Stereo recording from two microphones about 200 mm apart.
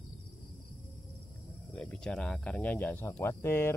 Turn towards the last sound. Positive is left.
turn(degrees=10)  # may be behind; listen again after turning